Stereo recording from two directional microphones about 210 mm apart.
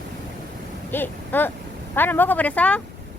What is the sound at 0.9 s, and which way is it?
Speech, 10° left (ahead or behind).